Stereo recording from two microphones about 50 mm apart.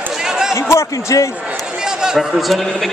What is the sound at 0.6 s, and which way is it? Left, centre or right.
Speech, left.